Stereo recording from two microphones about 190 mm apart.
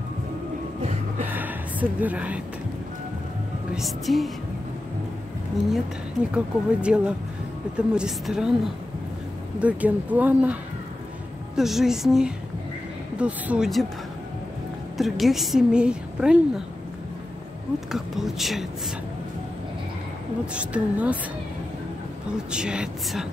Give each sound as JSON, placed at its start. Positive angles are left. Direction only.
{"t": 1.2, "sound": "a sound", "side_deg": -10}
{"t": 3.7, "sound": "a woman's voice", "side_deg": 0}
{"t": 6.3, "sound": "a woman's voice", "side_deg": -5}
{"t": 9.6, "sound": "a woman's voice", "side_deg": -5}
{"t": 15.0, "sound": "a woman's voice", "side_deg": 0}
{"t": 17.7, "sound": "a woman's voice", "side_deg": 0}
{"t": 20.5, "sound": "speech", "side_deg": -5}
{"t": 22.5, "sound": "a woman's voice", "side_deg": -5}